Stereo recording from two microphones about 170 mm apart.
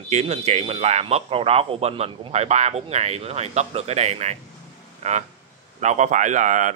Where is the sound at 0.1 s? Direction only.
40° right (ahead or behind).